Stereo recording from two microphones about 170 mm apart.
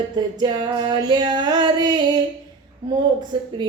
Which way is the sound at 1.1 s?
25° right (ahead or behind).